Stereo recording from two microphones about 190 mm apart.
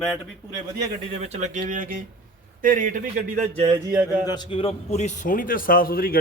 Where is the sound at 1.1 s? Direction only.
35° right (ahead or behind).